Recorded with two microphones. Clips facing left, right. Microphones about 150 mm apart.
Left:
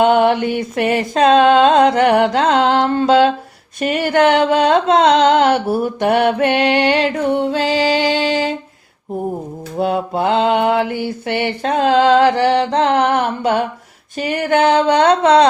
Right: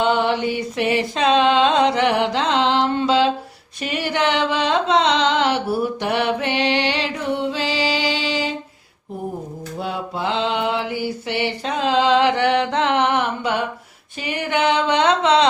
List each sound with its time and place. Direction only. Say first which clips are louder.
0.0 s mantra: left 6 dB; 55° left (ahead or behind)
3.8 s a sound: left 8 dB; 50° left (ahead or behind)
9.7 s mantra: left 9 dB; 50° left (ahead or behind)